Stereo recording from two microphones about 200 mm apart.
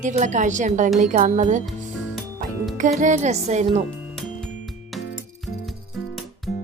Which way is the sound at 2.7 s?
40° right (ahead or behind).